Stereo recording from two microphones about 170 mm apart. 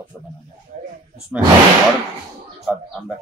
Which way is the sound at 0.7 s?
50° right (ahead or behind).